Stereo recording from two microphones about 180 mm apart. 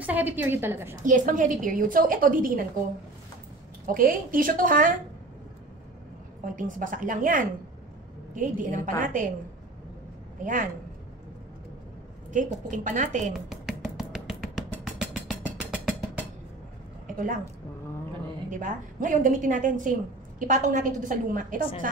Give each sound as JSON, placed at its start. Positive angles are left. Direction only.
{"t": 0.0, "sound": "a woman's voice", "side_deg": -10}
{"t": 1.0, "sound": "a woman's voice", "side_deg": -45}
{"t": 3.8, "sound": "a woman's voice", "side_deg": -50}
{"t": 6.4, "sound": "a woman's voice", "side_deg": -50}
{"t": 10.4, "sound": "a woman's voice", "side_deg": -45}
{"t": 12.3, "sound": "a woman's voice", "side_deg": -45}
{"t": 13.5, "sound": "music", "side_deg": 0}
{"t": 17.1, "sound": "a woman's voice", "side_deg": -50}
{"t": 18.5, "sound": "a woman's voice", "side_deg": -45}